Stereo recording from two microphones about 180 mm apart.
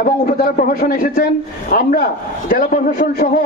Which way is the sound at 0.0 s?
55° left (ahead or behind).